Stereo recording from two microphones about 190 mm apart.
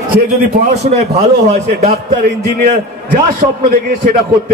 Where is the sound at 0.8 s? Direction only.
35° right (ahead or behind).